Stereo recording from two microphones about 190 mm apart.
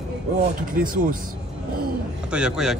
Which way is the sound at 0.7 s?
45° right (ahead or behind).